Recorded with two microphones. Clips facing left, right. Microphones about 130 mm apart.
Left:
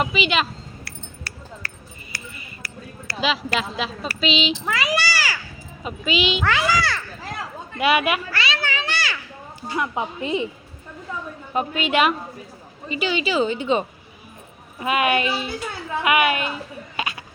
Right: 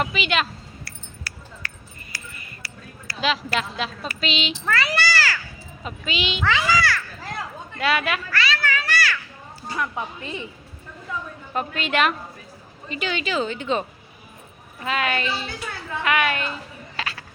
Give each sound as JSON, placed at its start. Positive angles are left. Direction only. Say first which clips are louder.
{"t": 0.0, "sound": "speech", "louder": "left 2 dB", "side_deg": 0}
{"t": 3.2, "sound": "speech", "louder": "left 1 dB", "side_deg": 0}
{"t": 4.7, "sound": "a sound", "louder": "right 4 dB", "side_deg": 15}
{"t": 5.8, "sound": "speech", "louder": "left 5 dB", "side_deg": 5}
{"t": 8.3, "sound": "children playing", "louder": "right 1 dB", "side_deg": 25}
{"t": 9.7, "sound": "a woman's voice", "louder": "left 3 dB", "side_deg": 20}
{"t": 11.5, "sound": "speech", "louder": "left 3 dB", "side_deg": 10}
{"t": 17.0, "sound": "a sound", "louder": "left 3 dB", "side_deg": 15}